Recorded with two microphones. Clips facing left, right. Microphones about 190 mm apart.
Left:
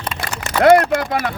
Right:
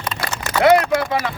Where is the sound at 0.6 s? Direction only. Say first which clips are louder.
Left 2 dB; 50° left (ahead or behind).